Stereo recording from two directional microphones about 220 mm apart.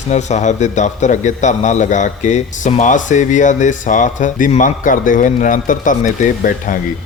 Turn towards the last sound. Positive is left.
turn(degrees=35)  # may be behind; listen again after turning